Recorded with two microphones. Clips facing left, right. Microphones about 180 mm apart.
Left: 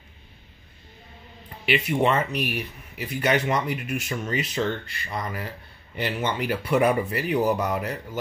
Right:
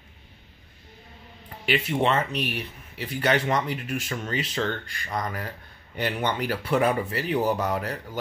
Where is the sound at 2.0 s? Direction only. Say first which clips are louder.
Left 1 dB; 10° left (ahead or behind).